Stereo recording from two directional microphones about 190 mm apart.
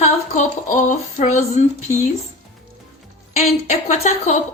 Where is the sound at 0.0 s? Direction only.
40° left (ahead or behind).